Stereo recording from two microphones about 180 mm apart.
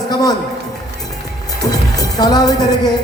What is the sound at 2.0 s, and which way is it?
Speech, 20° left (ahead or behind).